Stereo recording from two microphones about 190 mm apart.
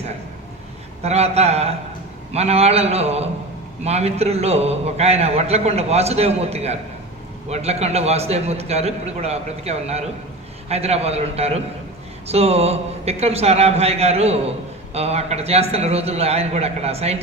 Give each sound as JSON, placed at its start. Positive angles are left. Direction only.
{"t": 1.0, "sound": "a man's voice", "side_deg": -35}